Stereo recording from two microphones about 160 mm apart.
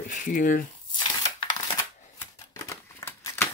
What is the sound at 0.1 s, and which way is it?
Speech, 55° left (ahead or behind).